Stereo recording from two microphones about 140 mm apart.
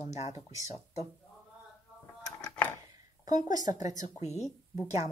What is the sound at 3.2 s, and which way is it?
Speech, 30° right (ahead or behind).